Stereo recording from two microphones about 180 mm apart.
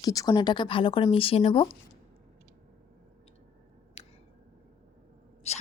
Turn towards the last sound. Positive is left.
turn(degrees=35)  # may be behind; listen again after turning